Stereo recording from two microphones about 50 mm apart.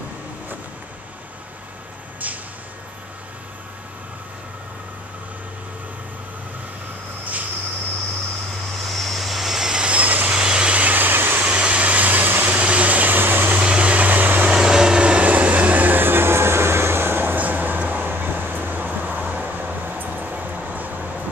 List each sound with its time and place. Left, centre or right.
2.2 s a sound: right
8.8 s vehicle: centre; by 10.3 s right
10.3 s vehicle: centre; by 11.4 s right
11.4 s vehicle: right
12.5 s vehicle: right
13.6 s vehicle: right
14.5 s vehicle: centre; by 20.9 s right